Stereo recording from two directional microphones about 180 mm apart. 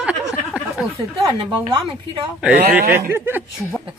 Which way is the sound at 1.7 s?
25° right (ahead or behind).